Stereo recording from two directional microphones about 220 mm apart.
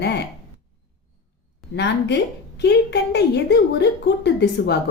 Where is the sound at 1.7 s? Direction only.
50° left (ahead or behind).